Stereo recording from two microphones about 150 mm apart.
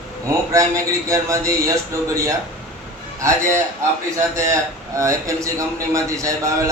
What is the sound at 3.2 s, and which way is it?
Speech, 20° right (ahead or behind).